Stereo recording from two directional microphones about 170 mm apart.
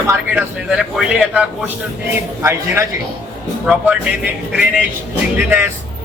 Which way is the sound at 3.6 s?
10° right (ahead or behind).